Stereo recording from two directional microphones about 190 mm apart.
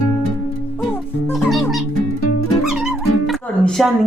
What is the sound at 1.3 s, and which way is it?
Music, centre (ahead or behind).